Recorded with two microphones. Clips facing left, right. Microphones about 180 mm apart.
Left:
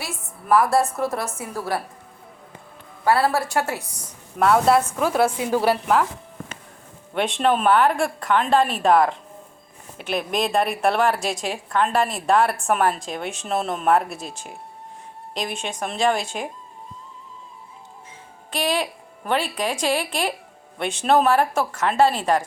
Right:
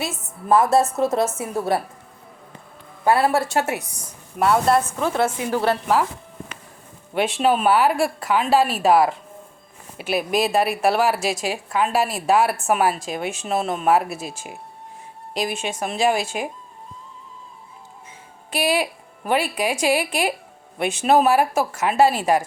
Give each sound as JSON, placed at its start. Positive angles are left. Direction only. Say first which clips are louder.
{"t": 0.0, "sound": "a woman's voice", "louder": "right 5 dB", "side_deg": -25}
{"t": 3.0, "sound": "a woman's voice", "louder": "right 1 dB", "side_deg": -20}
{"t": 4.4, "sound": "a woman's voice", "louder": "left 1 dB", "side_deg": 0}
{"t": 7.1, "sound": "a woman's voice", "louder": "right 1 dB", "side_deg": -5}
{"t": 18.5, "sound": "a woman's voice", "louder": "right 2 dB", "side_deg": -10}